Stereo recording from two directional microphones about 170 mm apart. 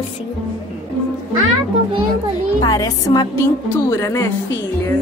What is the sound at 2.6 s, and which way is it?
A woman's voice, 20° left (ahead or behind).